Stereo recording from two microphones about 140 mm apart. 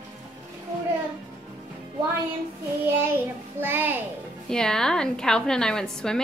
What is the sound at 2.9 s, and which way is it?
A child's voice, 15° right (ahead or behind).